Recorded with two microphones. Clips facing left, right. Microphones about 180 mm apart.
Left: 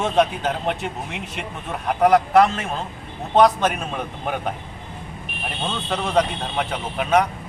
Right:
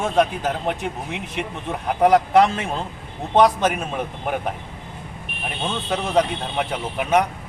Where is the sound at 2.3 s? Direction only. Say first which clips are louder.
Even; 20° right (ahead or behind).